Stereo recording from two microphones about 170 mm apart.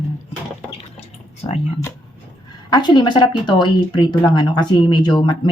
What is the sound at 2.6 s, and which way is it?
Speech, 25° left (ahead or behind).